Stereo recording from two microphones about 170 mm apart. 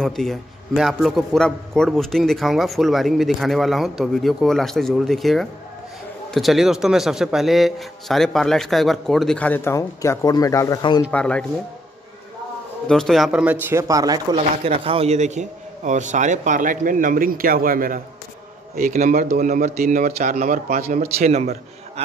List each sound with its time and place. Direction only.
0.0 s a man's voice: centre (ahead or behind); by 11.1 s 25° left (ahead or behind)
11.1 s speech: 5° left (ahead or behind)
12.8 s speech: 5° left (ahead or behind); by 14.4 s 25° right (ahead or behind)
14.6 s a man's voice: 35° right (ahead or behind); by 21.1 s 55° right (ahead or behind)
21.2 s a man's voice: 40° right (ahead or behind)